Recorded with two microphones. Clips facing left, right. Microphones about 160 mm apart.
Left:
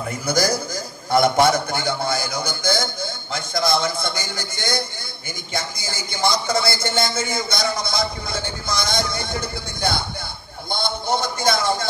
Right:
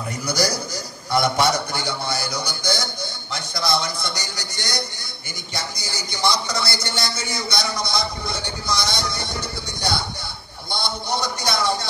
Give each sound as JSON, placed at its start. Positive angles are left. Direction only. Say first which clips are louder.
{"t": 0.2, "sound": "a man's voice", "louder": "left 2 dB", "side_deg": 50}